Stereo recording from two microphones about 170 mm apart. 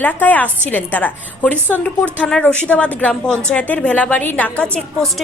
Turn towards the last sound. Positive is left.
turn(degrees=5)  # may be behind; listen again after turning